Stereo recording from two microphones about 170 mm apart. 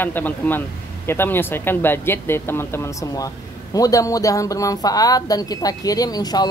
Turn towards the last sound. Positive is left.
turn(degrees=25)  # may be behind; listen again after turning